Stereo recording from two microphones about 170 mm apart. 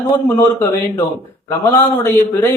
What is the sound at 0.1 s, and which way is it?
A man's voice, 20° left (ahead or behind).